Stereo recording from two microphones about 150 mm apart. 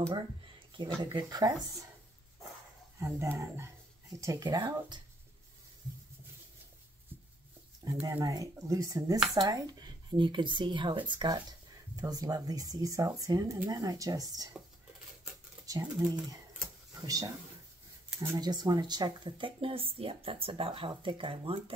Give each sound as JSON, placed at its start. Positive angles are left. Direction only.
{"t": 1.0, "sound": "speech", "side_deg": -25}
{"t": 3.0, "sound": "speech", "side_deg": -20}
{"t": 7.8, "sound": "speech", "side_deg": -20}
{"t": 15.6, "sound": "speech", "side_deg": -25}